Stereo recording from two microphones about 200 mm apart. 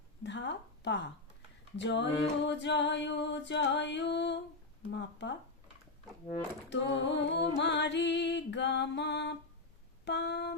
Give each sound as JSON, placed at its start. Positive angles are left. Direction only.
{"t": 0.2, "sound": "a woman's voice", "side_deg": 60}
{"t": 1.7, "sound": "music", "side_deg": 60}
{"t": 6.7, "sound": "music", "side_deg": 60}